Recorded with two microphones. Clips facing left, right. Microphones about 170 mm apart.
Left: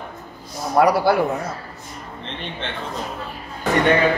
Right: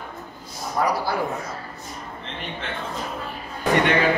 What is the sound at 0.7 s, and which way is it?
Speech, 70° left (ahead or behind).